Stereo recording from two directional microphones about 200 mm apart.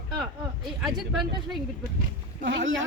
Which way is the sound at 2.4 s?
70° right (ahead or behind).